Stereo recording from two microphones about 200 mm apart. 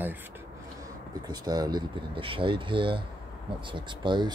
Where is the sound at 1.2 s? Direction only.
20° right (ahead or behind).